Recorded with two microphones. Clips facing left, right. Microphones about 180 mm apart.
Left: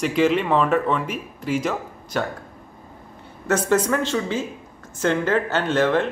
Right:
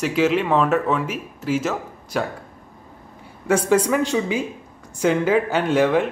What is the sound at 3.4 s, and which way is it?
A woman's voice, 10° right (ahead or behind).